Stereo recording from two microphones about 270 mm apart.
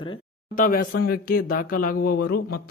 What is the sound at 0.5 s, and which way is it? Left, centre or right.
A man's voice, left.